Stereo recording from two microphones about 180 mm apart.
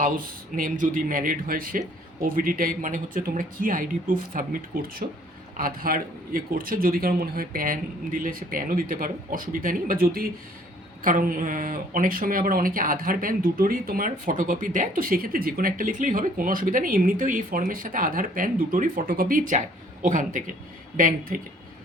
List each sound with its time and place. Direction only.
0.5 s speech: 50° right (ahead or behind)